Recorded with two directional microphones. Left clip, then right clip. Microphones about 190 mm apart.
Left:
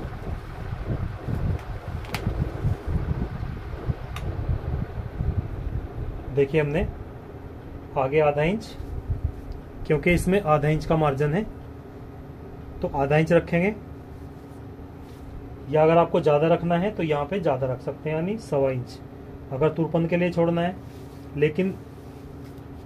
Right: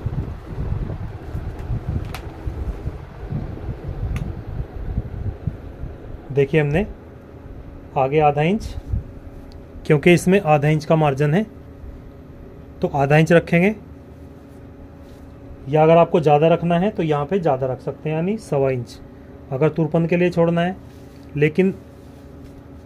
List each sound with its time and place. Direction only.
6.3 s speech: 60° right (ahead or behind)
7.9 s speech: 60° right (ahead or behind)
9.8 s speech: 55° right (ahead or behind)
12.8 s speech: 60° right (ahead or behind)
15.7 s speech: 60° right (ahead or behind)